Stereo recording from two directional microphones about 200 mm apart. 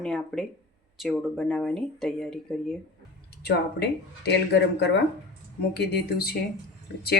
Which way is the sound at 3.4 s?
55° left (ahead or behind).